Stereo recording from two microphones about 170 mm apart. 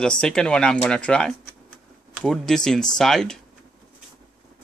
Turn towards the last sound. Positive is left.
turn(degrees=5)  # may be behind; listen again after turning